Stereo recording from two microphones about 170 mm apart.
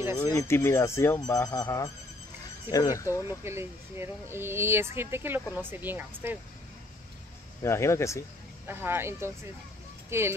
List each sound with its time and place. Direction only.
0.3 s speech: 15° left (ahead or behind)
3.3 s speech: 15° right (ahead or behind)
7.6 s speech: 15° left (ahead or behind)
8.6 s speech: 15° right (ahead or behind)